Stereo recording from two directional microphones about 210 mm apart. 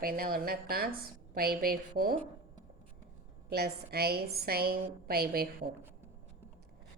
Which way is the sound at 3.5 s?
50° right (ahead or behind).